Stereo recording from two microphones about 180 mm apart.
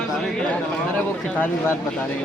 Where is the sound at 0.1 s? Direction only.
5° left (ahead or behind).